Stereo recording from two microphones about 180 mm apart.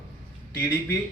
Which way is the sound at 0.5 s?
15° left (ahead or behind).